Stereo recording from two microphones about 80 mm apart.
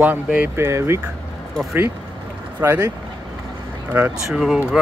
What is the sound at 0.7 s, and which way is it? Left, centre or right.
Speech, right.